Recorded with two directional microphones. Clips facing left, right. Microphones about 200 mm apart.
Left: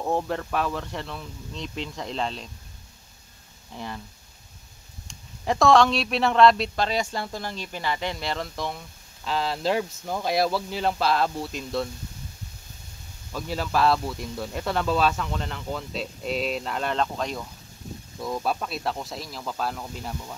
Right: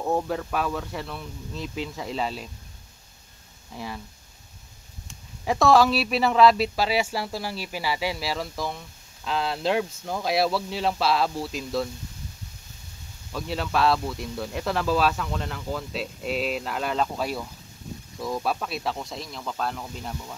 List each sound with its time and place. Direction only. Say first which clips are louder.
0.0 s speech: right 1 dB; centre (ahead or behind)
3.7 s speech: even; 5° right (ahead or behind)
5.0 s speech: even; centre (ahead or behind)
13.3 s speech: even; centre (ahead or behind)